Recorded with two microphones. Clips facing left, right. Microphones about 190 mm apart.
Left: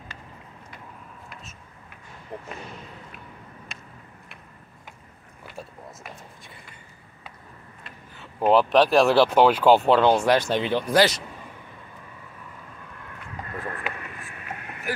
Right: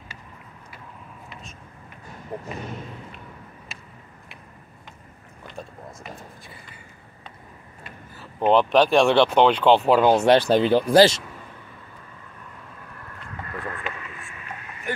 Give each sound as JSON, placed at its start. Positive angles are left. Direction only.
{"t": 2.3, "sound": "speech", "side_deg": -35}
{"t": 3.7, "sound": "vehicle", "side_deg": -5}
{"t": 5.4, "sound": "speech", "side_deg": 5}
{"t": 7.8, "sound": "speech", "side_deg": 0}
{"t": 9.8, "sound": "speech", "side_deg": -10}
{"t": 10.1, "sound": "speech", "side_deg": -25}